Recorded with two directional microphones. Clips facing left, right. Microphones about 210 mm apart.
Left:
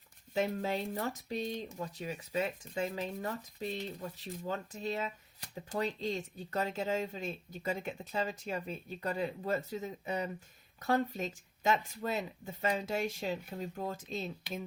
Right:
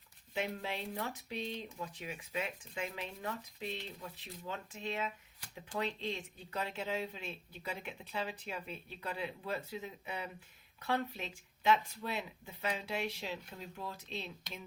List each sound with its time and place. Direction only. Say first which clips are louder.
0.3 s speech: left 6 dB; 40° left (ahead or behind)